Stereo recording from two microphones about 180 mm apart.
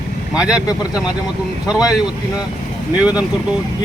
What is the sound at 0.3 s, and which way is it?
Speech, 5° right (ahead or behind).